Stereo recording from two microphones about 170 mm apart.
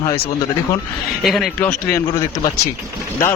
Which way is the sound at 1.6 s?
15° left (ahead or behind).